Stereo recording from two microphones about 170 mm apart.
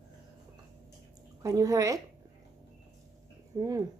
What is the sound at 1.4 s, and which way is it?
Speech, 20° right (ahead or behind).